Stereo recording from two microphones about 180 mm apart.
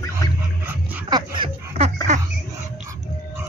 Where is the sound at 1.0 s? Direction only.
25° right (ahead or behind).